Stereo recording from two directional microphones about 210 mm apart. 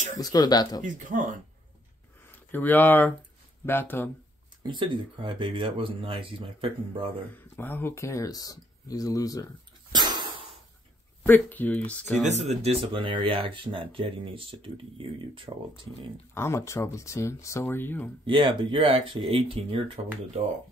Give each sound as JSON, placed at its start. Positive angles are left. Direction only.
{"t": 0.2, "sound": "speech", "side_deg": 20}
{"t": 2.3, "sound": "speech", "side_deg": 10}
{"t": 4.6, "sound": "speech", "side_deg": -25}
{"t": 7.3, "sound": "speech", "side_deg": 10}
{"t": 9.9, "sound": "a sound", "side_deg": -20}
{"t": 11.2, "sound": "speech", "side_deg": 10}
{"t": 12.3, "sound": "speech", "side_deg": -30}
{"t": 16.3, "sound": "speech", "side_deg": 10}
{"t": 18.2, "sound": "speech", "side_deg": -25}